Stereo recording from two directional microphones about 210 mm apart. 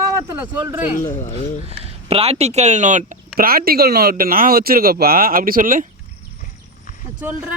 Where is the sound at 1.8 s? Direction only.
30° right (ahead or behind).